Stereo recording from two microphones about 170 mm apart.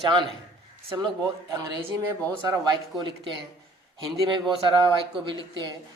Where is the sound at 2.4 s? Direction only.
25° right (ahead or behind).